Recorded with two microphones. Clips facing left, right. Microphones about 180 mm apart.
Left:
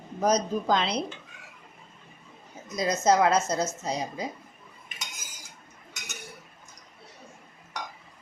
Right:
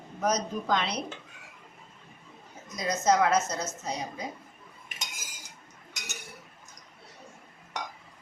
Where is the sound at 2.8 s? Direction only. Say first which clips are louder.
Left 2 dB; 30° left (ahead or behind).